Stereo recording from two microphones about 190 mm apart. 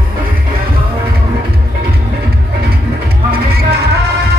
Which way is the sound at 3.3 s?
55° right (ahead or behind).